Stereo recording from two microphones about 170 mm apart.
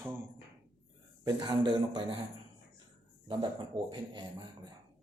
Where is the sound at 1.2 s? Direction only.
25° right (ahead or behind).